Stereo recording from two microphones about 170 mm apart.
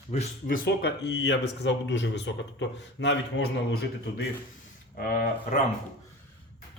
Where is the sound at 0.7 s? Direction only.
85° left.